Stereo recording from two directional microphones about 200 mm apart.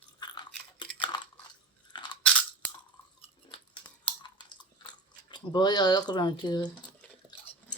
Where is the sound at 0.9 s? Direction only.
20° left (ahead or behind).